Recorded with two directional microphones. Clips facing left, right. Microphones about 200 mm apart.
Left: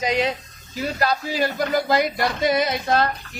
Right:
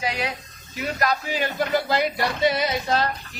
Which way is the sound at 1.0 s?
35° left (ahead or behind).